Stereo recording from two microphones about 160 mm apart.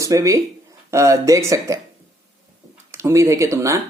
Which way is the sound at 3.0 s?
20° right (ahead or behind).